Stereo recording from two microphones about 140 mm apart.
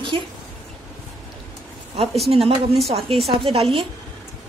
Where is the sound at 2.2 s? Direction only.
45° right (ahead or behind).